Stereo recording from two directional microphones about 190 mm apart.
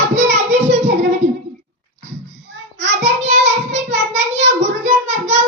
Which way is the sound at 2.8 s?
35° right (ahead or behind).